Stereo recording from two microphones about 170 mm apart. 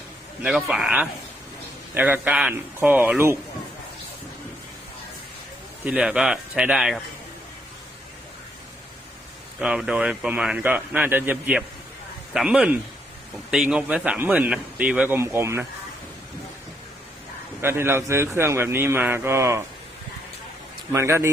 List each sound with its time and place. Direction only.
0.4 s a man's voice: 5° right (ahead or behind)
5.8 s a man's voice: 5° right (ahead or behind)
9.6 s a man's voice: 5° right (ahead or behind)
17.6 s a man's voice: 15° right (ahead or behind)
20.9 s a man's voice: 15° right (ahead or behind)